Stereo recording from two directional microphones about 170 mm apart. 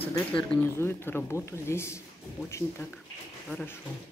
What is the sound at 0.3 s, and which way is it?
Speech, 10° left (ahead or behind).